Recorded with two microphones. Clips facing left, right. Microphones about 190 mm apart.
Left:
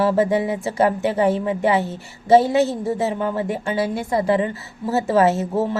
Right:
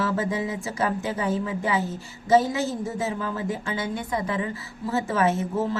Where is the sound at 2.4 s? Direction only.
70° left (ahead or behind).